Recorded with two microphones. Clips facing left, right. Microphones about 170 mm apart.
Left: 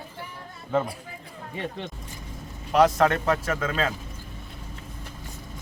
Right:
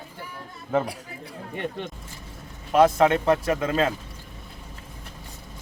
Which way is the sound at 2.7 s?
20° right (ahead or behind).